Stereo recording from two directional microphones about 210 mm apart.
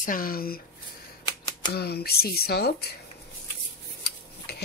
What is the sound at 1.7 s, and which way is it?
Speech, 50° left (ahead or behind).